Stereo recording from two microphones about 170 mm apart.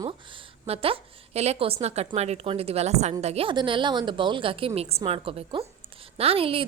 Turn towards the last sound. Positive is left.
turn(degrees=-35)  # may be behind; listen again after turning